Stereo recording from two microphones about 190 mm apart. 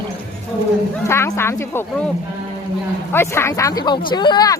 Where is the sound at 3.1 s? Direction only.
15° left (ahead or behind).